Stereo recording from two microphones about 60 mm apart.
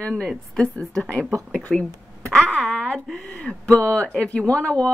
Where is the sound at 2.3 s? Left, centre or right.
Centre.